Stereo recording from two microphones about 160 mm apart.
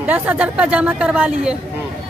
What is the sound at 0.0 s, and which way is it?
A woman's voice, 10° right (ahead or behind).